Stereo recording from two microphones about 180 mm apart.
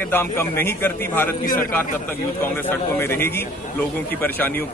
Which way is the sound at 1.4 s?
50° left (ahead or behind).